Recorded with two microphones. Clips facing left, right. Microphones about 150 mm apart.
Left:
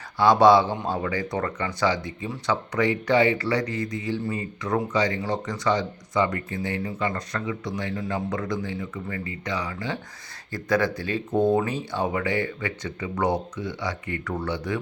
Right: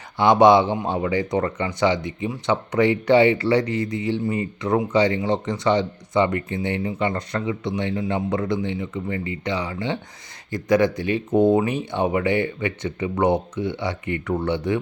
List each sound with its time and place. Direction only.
0.2 s speech: 20° right (ahead or behind)